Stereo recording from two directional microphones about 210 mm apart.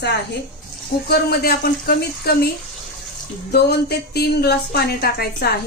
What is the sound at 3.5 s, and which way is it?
Speech, 50° left (ahead or behind).